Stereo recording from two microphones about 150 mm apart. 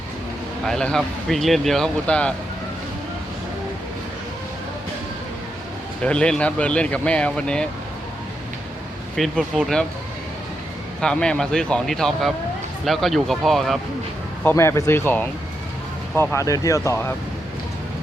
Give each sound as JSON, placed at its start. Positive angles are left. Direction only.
{"t": 0.6, "sound": "speech", "side_deg": 5}
{"t": 6.0, "sound": "speech", "side_deg": 5}
{"t": 9.1, "sound": "speech", "side_deg": 0}
{"t": 11.0, "sound": "speech", "side_deg": 5}
{"t": 14.4, "sound": "speech", "side_deg": 15}